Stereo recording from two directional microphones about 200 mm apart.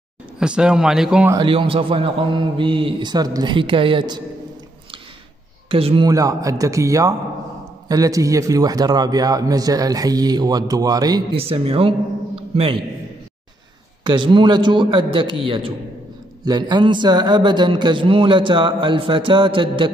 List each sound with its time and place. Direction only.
0.4 s speech: 5° right (ahead or behind)
1.3 s a man's voice: 25° right (ahead or behind)
5.7 s a man's voice: 25° right (ahead or behind)
14.0 s a man's voice: 25° right (ahead or behind)